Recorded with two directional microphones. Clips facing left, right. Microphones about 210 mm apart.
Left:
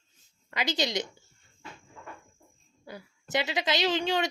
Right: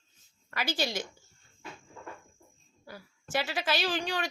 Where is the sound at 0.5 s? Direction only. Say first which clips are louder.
Left 3 dB; 20° left (ahead or behind).